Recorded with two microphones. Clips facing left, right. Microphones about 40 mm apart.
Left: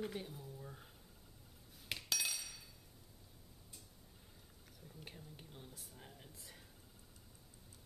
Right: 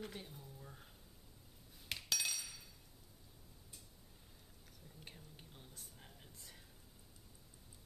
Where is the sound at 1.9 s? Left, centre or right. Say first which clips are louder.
Even; centre.